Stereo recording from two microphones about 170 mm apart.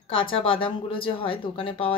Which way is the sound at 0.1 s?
30° left (ahead or behind).